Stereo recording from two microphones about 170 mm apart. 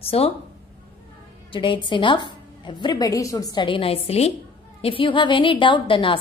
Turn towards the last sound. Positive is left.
turn(degrees=30)  # may be behind; listen again after turning